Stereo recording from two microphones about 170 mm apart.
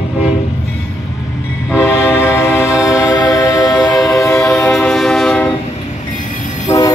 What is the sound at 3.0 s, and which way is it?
Music, 20° left (ahead or behind).